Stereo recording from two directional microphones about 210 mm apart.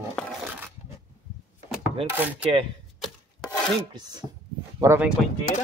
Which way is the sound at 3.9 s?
20° right (ahead or behind).